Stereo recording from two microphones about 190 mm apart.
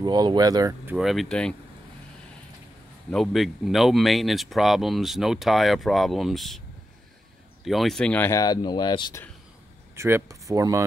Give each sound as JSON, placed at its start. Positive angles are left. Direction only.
{"t": 0.0, "sound": "speech", "side_deg": -20}
{"t": 0.9, "sound": "speech", "side_deg": 0}
{"t": 3.1, "sound": "speech", "side_deg": 0}
{"t": 7.6, "sound": "speech", "side_deg": 0}
{"t": 9.9, "sound": "speech", "side_deg": -15}